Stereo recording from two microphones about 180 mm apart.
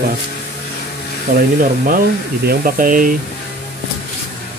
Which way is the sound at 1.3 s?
50° right (ahead or behind).